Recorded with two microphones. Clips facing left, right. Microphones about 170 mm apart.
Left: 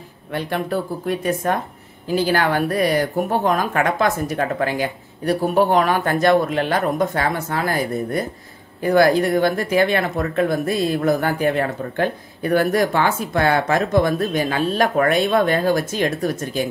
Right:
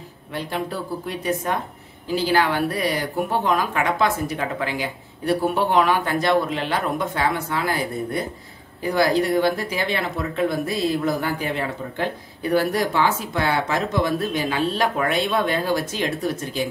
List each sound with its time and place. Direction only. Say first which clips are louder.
0.3 s speech: left 4 dB; 60° left (ahead or behind)